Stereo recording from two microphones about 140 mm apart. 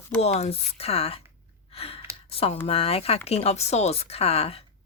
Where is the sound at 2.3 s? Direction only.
45° left (ahead or behind).